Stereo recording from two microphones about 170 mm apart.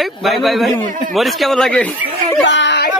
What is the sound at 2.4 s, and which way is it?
Speech, 90° left.